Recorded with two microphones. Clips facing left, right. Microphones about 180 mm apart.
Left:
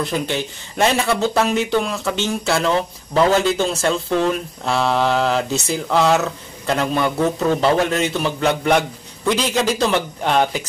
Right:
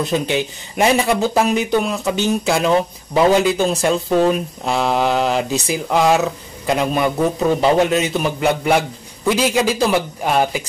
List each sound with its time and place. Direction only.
0.0 s speech: 15° right (ahead or behind)